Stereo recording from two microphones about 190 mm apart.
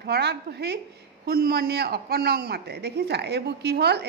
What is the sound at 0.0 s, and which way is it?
Speech, 60° right (ahead or behind).